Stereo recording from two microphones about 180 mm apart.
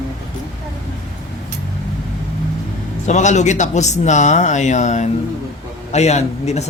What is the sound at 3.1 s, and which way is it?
Speech, 40° left (ahead or behind).